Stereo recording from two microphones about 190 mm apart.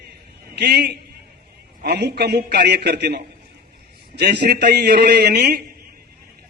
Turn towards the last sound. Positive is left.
turn(degrees=-55)  # may be behind; listen again after turning